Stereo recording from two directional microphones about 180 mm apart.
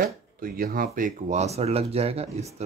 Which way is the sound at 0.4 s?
55° right (ahead or behind).